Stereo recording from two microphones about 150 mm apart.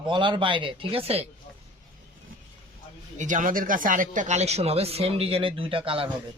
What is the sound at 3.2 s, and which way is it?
Speech, 60° right (ahead or behind).